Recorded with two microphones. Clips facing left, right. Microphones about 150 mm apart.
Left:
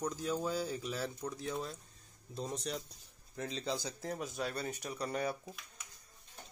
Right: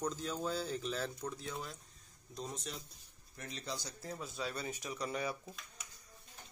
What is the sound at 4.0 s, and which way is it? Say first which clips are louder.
Speech: left 5 dB; 75° left (ahead or behind).